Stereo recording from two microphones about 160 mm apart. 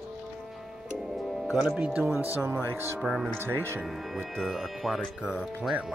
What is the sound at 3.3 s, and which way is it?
Speech, 15° right (ahead or behind).